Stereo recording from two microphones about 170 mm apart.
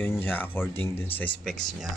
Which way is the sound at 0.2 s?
10° left (ahead or behind).